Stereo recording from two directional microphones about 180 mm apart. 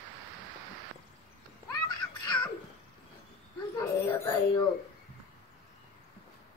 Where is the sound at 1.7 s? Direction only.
25° left (ahead or behind).